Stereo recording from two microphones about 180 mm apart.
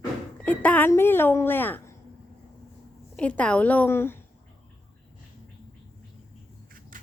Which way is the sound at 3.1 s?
5° left (ahead or behind).